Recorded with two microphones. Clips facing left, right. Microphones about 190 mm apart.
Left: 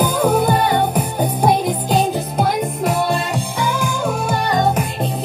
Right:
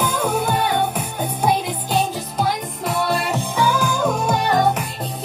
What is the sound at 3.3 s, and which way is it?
Music, 10° left (ahead or behind).